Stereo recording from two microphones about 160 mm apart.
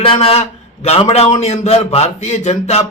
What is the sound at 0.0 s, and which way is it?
A man's voice, 35° left (ahead or behind).